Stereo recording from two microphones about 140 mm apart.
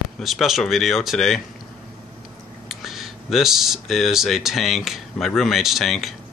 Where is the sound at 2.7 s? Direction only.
Centre (ahead or behind).